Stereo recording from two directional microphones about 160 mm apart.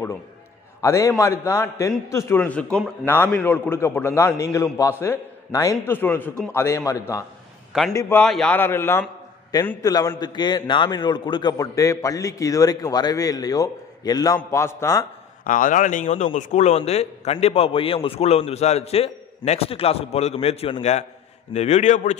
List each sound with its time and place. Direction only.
0.7 s a man's voice: 20° left (ahead or behind)
8.2 s a man's voice: 5° left (ahead or behind)
15.4 s a man's voice: 55° left (ahead or behind)